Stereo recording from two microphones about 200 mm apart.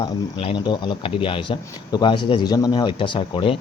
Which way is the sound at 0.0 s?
25° left (ahead or behind).